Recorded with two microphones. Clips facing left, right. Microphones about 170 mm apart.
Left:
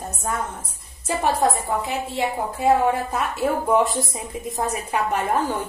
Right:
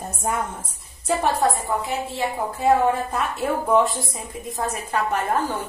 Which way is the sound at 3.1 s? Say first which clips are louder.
Left 1 dB; 5° left (ahead or behind).